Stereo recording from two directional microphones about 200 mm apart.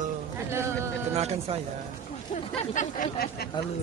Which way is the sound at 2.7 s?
40° left (ahead or behind).